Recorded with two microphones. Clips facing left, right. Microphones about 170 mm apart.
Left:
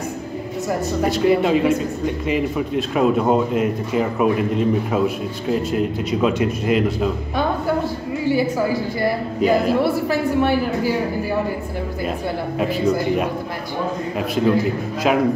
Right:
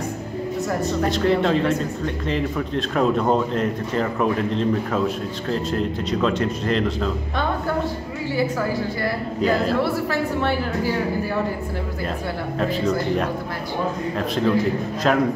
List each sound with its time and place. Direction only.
0.7 s speech: 10° left (ahead or behind)
9.0 s speech: 15° left (ahead or behind)
12.5 s speech: 10° left (ahead or behind)